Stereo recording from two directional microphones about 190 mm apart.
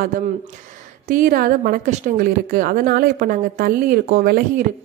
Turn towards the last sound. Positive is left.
turn(degrees=-50)  # may be behind; listen again after turning